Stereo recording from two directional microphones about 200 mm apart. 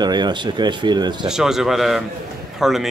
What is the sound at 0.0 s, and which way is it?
Speech, 20° right (ahead or behind).